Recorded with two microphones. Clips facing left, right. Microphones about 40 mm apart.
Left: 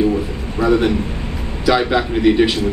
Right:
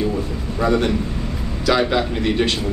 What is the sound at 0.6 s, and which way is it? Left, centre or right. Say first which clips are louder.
Speech: left 3 dB; centre.